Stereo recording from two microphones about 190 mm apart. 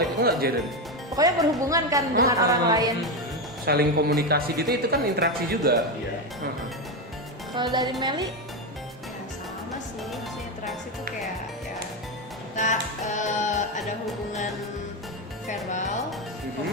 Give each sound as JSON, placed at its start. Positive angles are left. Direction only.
{"t": 0.2, "sound": "speech", "side_deg": -55}
{"t": 1.1, "sound": "a woman's voice", "side_deg": -20}
{"t": 3.7, "sound": "speech", "side_deg": -55}
{"t": 7.5, "sound": "a woman's voice", "side_deg": -25}
{"t": 13.1, "sound": "music", "side_deg": 40}
{"t": 15.4, "sound": "music", "side_deg": 40}